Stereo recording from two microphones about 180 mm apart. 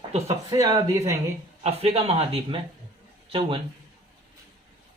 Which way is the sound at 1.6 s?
35° right (ahead or behind).